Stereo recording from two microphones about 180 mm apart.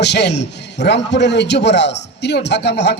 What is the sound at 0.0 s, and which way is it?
A man's voice, 70° left (ahead or behind).